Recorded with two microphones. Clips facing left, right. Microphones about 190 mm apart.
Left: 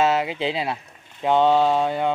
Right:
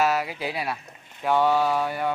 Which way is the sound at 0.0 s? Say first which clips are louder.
Left 4 dB; 25° left (ahead or behind).